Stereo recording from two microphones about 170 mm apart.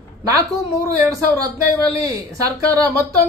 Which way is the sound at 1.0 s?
20° right (ahead or behind).